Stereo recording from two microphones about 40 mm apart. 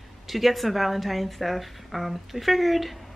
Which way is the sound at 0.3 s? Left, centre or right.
Centre.